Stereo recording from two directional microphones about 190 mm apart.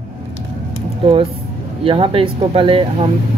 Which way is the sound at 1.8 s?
30° right (ahead or behind).